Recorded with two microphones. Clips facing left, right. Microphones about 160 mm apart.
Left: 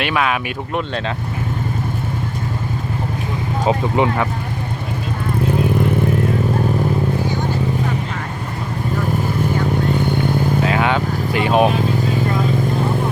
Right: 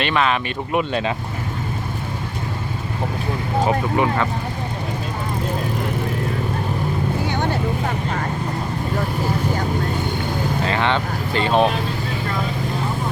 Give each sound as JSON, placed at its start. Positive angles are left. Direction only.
{"t": 0.0, "sound": "speech", "side_deg": 5}
{"t": 0.7, "sound": "speech", "side_deg": -5}
{"t": 3.7, "sound": "speech", "side_deg": 20}
{"t": 10.6, "sound": "vehicle", "side_deg": 5}